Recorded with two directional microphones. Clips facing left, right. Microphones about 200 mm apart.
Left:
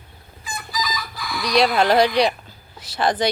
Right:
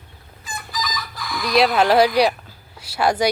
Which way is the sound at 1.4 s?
5° right (ahead or behind).